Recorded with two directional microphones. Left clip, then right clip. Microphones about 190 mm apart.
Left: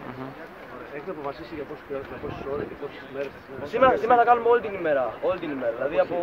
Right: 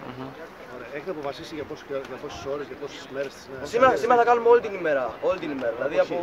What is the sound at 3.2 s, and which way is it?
Speech, 50° right (ahead or behind).